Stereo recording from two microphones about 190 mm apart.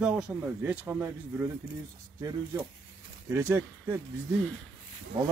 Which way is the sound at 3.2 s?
15° right (ahead or behind).